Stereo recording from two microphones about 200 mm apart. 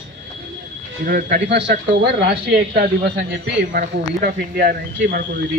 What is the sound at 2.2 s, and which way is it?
Speech, 50° right (ahead or behind).